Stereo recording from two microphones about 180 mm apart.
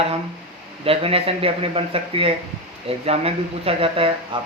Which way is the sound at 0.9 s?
30° right (ahead or behind).